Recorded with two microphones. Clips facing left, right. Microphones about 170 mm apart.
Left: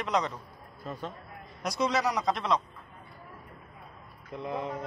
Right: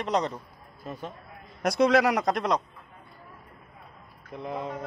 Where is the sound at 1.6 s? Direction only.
60° right (ahead or behind).